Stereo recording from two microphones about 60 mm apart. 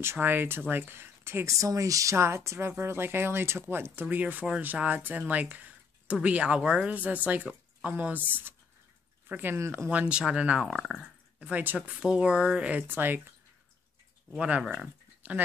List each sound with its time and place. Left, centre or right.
0.0 s speech: right
1.5 s speech: right
2.1 s speech: right; by 6.9 s centre
6.9 s speech: right
9.3 s speech: right
9.6 s speech: right
9.8 s speech: right
11.5 s speech: right
12.0 s speech: centre
12.8 s speech: right
14.4 s speech: centre
15.2 s speech: right